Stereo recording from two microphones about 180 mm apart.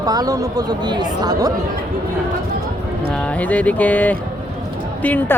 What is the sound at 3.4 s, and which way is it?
Speech, 10° left (ahead or behind).